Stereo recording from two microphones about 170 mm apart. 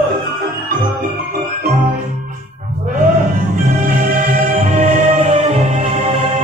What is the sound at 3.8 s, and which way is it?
Music, 45° right (ahead or behind).